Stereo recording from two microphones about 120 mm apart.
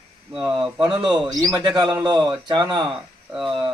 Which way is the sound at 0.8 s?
35° right (ahead or behind).